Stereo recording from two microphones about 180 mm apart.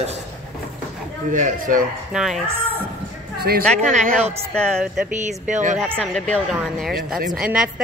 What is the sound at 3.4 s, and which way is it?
Speech, 60° right (ahead or behind).